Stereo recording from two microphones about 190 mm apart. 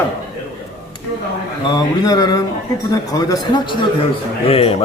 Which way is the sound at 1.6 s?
20° left (ahead or behind).